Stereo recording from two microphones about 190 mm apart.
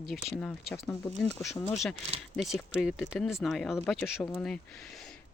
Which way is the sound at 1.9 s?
35° right (ahead or behind).